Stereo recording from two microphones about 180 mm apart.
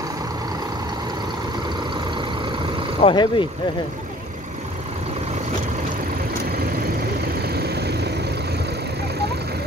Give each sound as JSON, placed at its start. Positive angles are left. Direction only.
{"t": 3.0, "sound": "speech", "side_deg": 30}
{"t": 7.4, "sound": "vehicle", "side_deg": -60}